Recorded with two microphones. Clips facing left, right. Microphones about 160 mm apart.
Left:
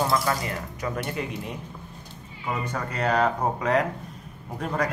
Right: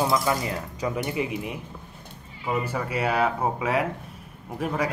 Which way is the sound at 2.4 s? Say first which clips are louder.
Right 3 dB; 10° right (ahead or behind).